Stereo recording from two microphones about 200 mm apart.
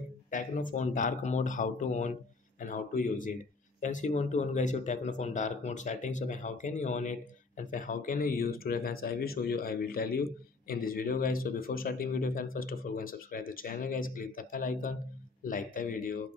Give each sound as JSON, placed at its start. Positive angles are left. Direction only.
{"t": 0.3, "sound": "speech", "side_deg": 40}